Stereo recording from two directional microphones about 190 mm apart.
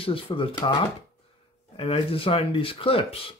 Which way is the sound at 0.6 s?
15° left (ahead or behind).